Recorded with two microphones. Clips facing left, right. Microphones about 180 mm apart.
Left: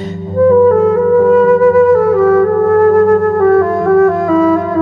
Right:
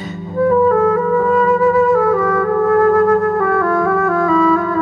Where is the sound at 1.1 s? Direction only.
50° left (ahead or behind).